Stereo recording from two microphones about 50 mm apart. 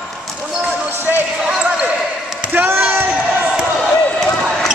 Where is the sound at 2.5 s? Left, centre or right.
Right.